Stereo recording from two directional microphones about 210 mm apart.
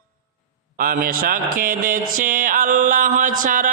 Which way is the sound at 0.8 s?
45° right (ahead or behind).